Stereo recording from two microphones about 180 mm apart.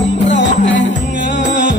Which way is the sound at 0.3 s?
85° left.